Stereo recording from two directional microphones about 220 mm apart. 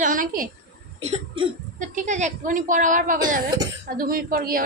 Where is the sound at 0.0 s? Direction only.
40° right (ahead or behind).